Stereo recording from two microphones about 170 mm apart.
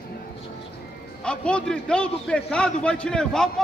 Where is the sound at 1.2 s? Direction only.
5° left (ahead or behind).